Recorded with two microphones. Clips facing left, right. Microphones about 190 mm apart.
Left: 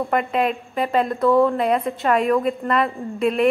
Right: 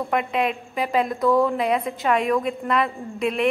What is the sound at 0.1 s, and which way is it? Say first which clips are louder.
A woman's voice: left 1 dB; centre (ahead or behind).